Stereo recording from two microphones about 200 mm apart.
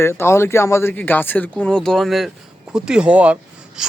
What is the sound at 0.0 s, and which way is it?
Speech, 10° left (ahead or behind).